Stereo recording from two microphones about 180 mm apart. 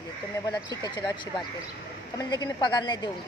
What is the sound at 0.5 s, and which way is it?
Speech, 25° left (ahead or behind).